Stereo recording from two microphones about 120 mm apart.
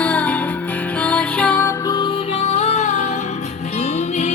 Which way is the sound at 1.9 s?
50° left (ahead or behind).